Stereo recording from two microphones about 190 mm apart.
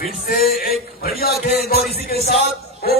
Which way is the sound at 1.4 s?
55° left (ahead or behind).